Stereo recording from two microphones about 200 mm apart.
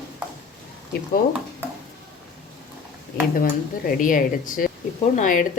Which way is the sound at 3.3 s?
45° left (ahead or behind).